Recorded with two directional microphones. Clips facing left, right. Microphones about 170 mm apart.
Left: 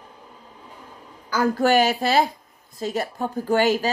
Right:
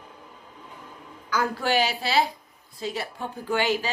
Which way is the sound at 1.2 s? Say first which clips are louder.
Left 6 dB; 45° left (ahead or behind).